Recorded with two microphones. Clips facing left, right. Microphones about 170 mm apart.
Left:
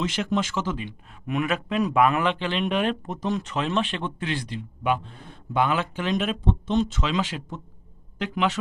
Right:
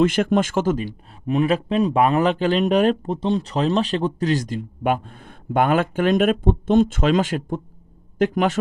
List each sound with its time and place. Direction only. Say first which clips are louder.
0.0 s speech: right 8 dB; 50° right (ahead or behind)